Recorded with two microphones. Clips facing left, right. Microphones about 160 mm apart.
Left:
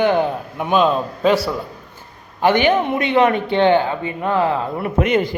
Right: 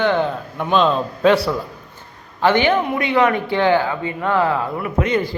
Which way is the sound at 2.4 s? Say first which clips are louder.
Left 1 dB; 15° left (ahead or behind).